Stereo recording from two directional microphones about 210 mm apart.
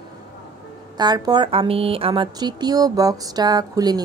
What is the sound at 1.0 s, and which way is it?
A woman's voice, 20° right (ahead or behind).